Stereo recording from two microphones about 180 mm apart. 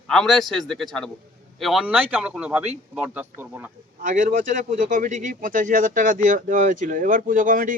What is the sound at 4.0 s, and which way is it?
Speech, 45° right (ahead or behind).